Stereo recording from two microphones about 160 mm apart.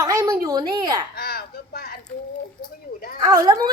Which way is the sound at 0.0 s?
20° right (ahead or behind).